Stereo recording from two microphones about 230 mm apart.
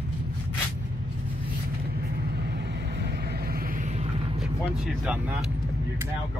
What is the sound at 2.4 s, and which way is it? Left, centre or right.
Vehicle, right.